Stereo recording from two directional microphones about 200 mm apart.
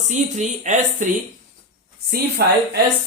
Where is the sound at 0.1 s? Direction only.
35° right (ahead or behind).